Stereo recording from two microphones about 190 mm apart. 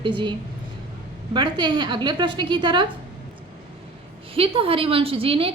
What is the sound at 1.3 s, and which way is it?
A woman's voice, 25° right (ahead or behind).